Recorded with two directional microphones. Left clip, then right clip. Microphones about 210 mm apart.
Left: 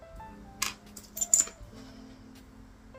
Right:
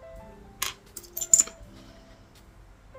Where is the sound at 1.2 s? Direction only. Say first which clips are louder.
Right 4 dB; 20° right (ahead or behind).